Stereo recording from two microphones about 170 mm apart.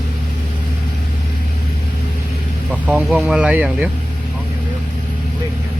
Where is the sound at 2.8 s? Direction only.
5° right (ahead or behind).